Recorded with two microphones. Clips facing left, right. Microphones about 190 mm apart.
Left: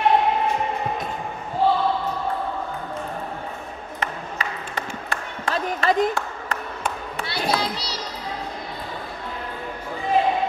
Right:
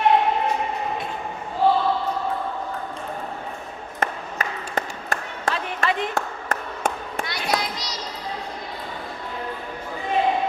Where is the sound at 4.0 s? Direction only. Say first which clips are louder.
Right 3 dB; 45° right (ahead or behind).